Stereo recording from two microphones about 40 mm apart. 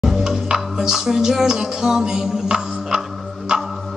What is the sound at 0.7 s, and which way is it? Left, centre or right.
Music, centre.